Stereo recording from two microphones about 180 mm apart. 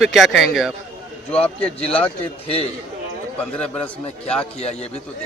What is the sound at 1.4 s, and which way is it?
Speech, 35° left (ahead or behind).